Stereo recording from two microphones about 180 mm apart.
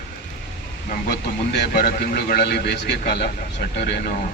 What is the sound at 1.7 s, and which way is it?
Speech, 55° left (ahead or behind).